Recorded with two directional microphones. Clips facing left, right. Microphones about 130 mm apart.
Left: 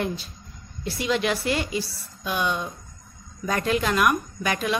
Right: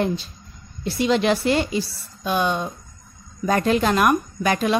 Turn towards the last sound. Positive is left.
turn(degrees=-35)  # may be behind; listen again after turning